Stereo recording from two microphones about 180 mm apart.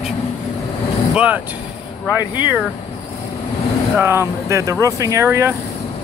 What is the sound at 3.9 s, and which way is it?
Speech, 15° right (ahead or behind).